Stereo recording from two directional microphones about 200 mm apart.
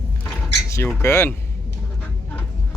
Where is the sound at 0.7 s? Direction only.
10° left (ahead or behind).